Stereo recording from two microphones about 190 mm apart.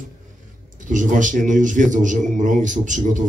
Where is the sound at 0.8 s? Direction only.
40° right (ahead or behind).